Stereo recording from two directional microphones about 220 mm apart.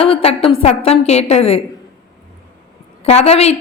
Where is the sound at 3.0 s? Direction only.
30° left (ahead or behind).